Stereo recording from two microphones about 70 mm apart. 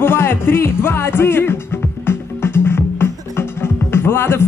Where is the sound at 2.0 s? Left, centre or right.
Left.